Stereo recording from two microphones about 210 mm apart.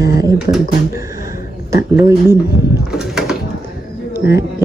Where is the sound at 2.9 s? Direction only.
Centre (ahead or behind).